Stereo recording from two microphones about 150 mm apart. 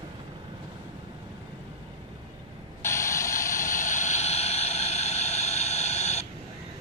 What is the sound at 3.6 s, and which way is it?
Vehicle, 55° left (ahead or behind).